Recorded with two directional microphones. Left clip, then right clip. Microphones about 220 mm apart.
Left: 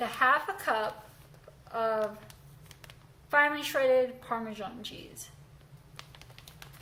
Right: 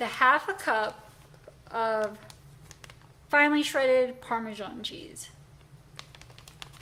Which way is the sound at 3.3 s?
40° right (ahead or behind).